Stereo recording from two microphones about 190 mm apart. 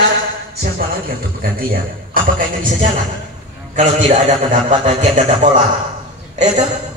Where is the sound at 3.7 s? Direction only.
40° right (ahead or behind).